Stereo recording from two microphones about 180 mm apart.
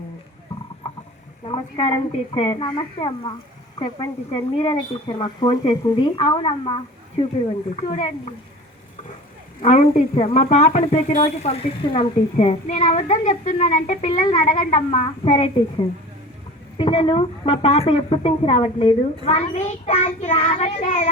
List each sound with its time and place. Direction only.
1.5 s a woman's voice: 25° left (ahead or behind)
9.6 s a woman's voice: 40° left (ahead or behind)
16.7 s a woman's voice: 30° left (ahead or behind)